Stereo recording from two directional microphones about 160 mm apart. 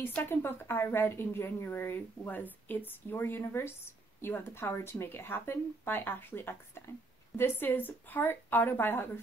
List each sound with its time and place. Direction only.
0.0 s a woman's voice: 15° left (ahead or behind)